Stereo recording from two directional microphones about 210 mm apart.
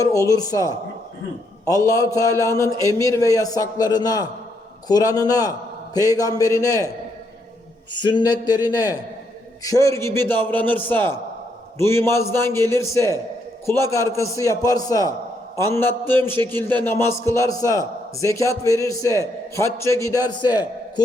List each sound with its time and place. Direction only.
0.0 s a man's voice: 15° left (ahead or behind)
1.6 s a man's voice: 15° left (ahead or behind)
8.0 s a man's voice: 20° left (ahead or behind)